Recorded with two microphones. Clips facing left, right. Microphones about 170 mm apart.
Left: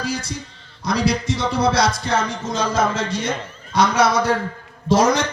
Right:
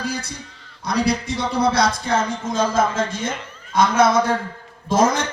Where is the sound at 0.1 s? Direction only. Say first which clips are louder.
Left 2 dB; 55° right (ahead or behind).